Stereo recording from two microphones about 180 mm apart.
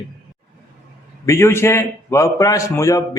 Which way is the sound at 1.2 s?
15° left (ahead or behind).